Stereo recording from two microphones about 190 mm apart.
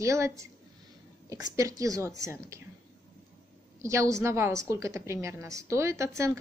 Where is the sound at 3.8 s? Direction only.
15° right (ahead or behind).